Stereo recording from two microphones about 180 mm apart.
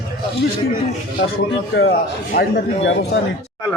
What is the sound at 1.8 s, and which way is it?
Speech, 85° left.